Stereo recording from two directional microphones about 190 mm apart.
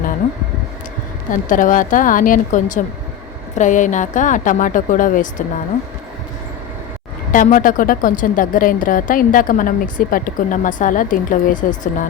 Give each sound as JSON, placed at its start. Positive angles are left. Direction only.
{"t": 1.3, "sound": "a woman's voice", "side_deg": 45}
{"t": 7.3, "sound": "speech", "side_deg": 45}